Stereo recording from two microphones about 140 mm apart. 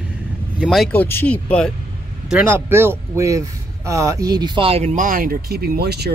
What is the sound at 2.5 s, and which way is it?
Speech, 15° right (ahead or behind).